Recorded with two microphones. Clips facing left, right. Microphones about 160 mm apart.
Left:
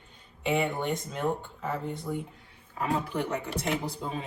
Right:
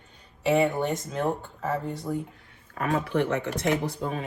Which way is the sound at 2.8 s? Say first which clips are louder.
Right 4 dB; 65° right (ahead or behind).